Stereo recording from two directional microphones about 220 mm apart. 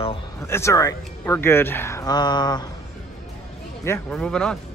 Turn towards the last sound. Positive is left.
turn(degrees=5)  # may be behind; listen again after turning